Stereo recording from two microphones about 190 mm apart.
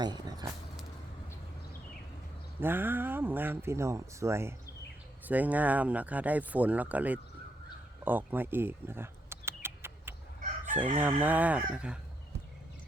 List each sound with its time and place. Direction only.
0.0 s speech: 20° right (ahead or behind)
2.6 s speech: 10° right (ahead or behind)
8.0 s a sound: 10° right (ahead or behind)
11.0 s speech: 10° right (ahead or behind)